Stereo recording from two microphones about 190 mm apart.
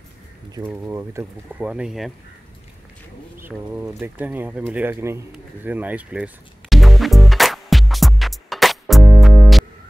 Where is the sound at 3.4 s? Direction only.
10° right (ahead or behind).